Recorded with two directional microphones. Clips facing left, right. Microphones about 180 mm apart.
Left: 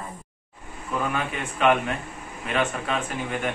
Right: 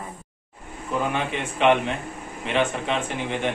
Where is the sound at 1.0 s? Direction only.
25° right (ahead or behind).